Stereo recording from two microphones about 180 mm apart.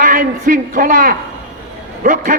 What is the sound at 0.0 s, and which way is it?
A man's voice, 45° right (ahead or behind).